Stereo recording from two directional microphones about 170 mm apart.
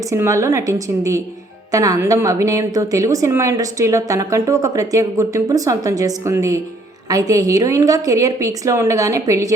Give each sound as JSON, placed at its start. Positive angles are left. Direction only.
{"t": 0.1, "sound": "a woman's voice", "side_deg": -20}